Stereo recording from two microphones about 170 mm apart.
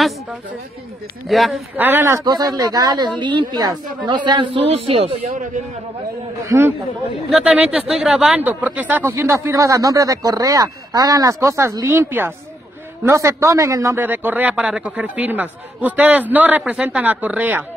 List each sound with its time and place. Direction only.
1.3 s a woman's voice: centre (ahead or behind)
1.8 s a woman's voice: 10° right (ahead or behind); by 5.4 s 35° right (ahead or behind)
6.4 s speech: 15° right (ahead or behind)